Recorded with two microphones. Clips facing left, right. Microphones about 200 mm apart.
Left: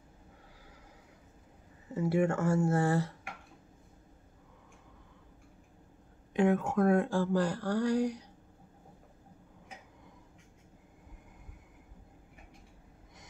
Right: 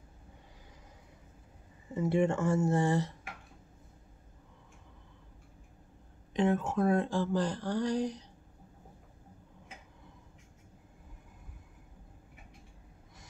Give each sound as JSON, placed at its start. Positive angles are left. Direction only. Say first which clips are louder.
{"t": 2.0, "sound": "speech", "louder": "even", "side_deg": 10}
{"t": 6.3, "sound": "speech", "louder": "left 2 dB", "side_deg": 10}